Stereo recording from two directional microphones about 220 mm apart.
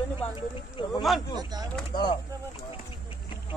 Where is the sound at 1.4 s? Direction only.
15° right (ahead or behind).